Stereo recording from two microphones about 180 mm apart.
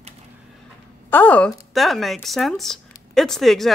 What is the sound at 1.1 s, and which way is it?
Speech, 10° left (ahead or behind).